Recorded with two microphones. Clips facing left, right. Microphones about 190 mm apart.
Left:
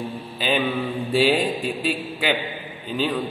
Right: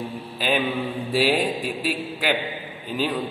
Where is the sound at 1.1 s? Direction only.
5° right (ahead or behind).